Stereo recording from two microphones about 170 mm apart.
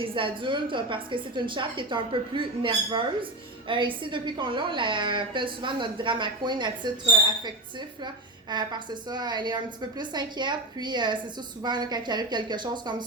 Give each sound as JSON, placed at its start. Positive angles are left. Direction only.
{"t": 0.0, "sound": "a woman's voice", "side_deg": -30}